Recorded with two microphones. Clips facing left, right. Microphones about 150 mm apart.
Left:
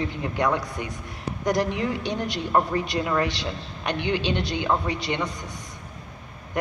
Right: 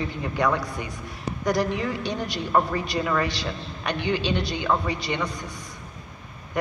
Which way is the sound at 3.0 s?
10° left (ahead or behind).